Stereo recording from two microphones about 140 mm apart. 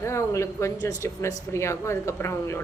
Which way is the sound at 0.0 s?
20° left (ahead or behind).